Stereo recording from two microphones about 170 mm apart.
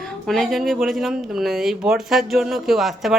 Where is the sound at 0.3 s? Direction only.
Centre (ahead or behind).